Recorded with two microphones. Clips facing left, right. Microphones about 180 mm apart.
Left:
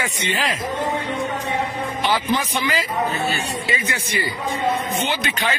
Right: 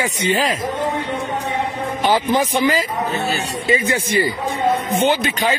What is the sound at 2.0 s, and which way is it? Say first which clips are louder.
Speech: right 5 dB; 45° right (ahead or behind).